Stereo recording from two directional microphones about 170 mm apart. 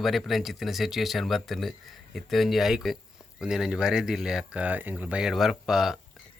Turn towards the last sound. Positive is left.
turn(degrees=0)  # may be behind; listen again after turning